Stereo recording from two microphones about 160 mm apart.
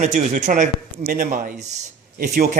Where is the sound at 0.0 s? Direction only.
50° right (ahead or behind).